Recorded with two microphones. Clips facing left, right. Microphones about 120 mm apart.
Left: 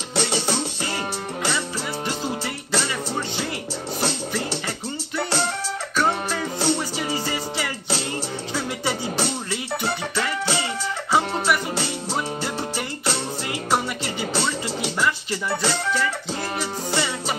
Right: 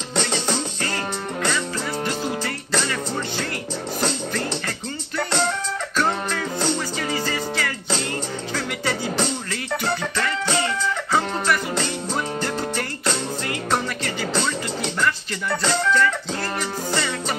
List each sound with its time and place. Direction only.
0.2 s music: 10° left (ahead or behind)
4.0 s music: 10° left (ahead or behind)
6.6 s music: 15° left (ahead or behind)
9.1 s music: 10° left (ahead or behind)